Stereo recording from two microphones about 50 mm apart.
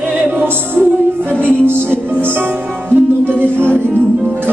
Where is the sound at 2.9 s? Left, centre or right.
Right.